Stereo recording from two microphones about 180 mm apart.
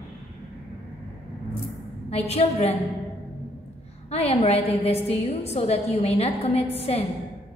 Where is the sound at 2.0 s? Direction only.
35° left (ahead or behind).